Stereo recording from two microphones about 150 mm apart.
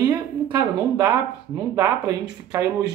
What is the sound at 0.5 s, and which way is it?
Speech, 20° right (ahead or behind).